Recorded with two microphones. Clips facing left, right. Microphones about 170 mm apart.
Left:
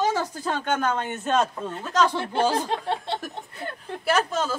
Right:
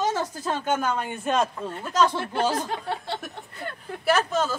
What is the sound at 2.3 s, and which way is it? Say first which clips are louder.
Speech: left 2 dB; 25° left (ahead or behind).